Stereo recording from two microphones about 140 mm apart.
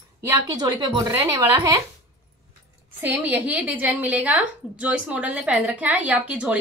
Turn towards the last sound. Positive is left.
turn(degrees=-10)  # may be behind; listen again after turning